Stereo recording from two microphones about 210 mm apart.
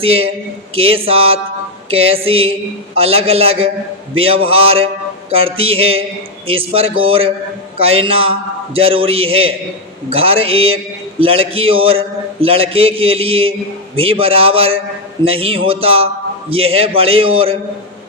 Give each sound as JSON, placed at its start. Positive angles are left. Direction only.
{"t": 0.0, "sound": "a man's voice", "side_deg": -25}